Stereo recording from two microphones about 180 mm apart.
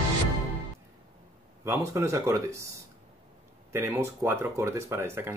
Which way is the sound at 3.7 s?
15° right (ahead or behind).